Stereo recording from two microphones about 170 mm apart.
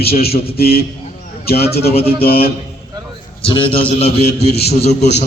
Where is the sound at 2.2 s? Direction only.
60° left (ahead or behind).